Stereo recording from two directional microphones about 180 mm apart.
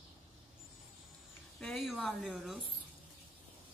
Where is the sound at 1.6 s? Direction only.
Centre (ahead or behind).